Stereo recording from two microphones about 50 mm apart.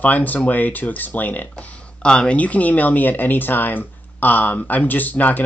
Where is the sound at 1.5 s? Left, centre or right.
Centre; by 5.4 s left.